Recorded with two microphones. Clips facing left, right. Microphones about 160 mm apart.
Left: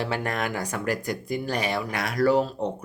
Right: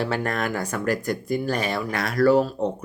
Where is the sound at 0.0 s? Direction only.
15° left (ahead or behind).